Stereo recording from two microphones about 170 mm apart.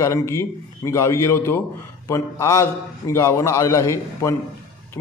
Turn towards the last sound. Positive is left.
turn(degrees=20)  # may be behind; listen again after turning